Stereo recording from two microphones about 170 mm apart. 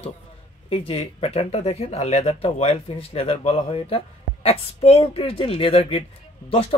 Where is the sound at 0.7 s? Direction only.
35° left (ahead or behind).